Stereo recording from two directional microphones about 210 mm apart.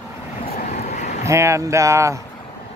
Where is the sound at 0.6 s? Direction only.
35° left (ahead or behind).